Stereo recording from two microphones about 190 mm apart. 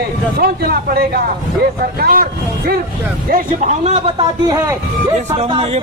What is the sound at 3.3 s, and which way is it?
Speech, 40° right (ahead or behind).